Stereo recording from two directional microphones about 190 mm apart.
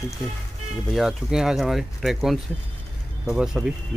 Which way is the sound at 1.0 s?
5° right (ahead or behind).